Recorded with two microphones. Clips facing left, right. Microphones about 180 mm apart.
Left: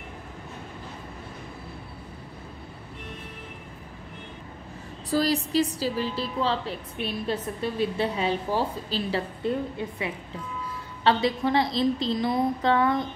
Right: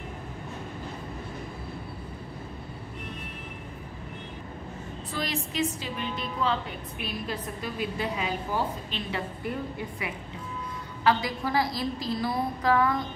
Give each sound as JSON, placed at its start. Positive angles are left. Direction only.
{"t": 5.1, "sound": "a woman's voice", "side_deg": 35}